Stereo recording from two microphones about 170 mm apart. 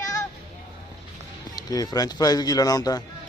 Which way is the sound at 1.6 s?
20° left (ahead or behind).